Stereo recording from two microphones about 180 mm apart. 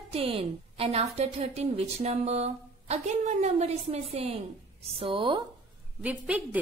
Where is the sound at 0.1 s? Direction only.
30° right (ahead or behind).